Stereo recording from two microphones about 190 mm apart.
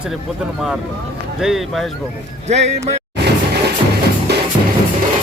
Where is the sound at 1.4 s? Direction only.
Centre (ahead or behind).